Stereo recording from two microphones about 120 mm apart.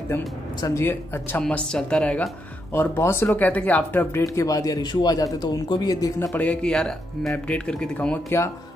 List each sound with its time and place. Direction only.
0.6 s speech: 30° left (ahead or behind)
0.8 s speech: 15° left (ahead or behind)
1.4 s speech: 5° left (ahead or behind)
4.2 s speech: 25° left (ahead or behind)
6.3 s speech: 10° left (ahead or behind)